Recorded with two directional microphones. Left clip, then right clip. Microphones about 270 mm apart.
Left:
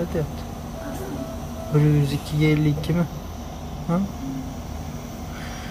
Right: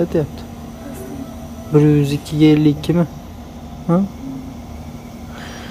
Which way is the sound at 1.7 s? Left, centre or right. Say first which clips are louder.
Right 9 dB; right.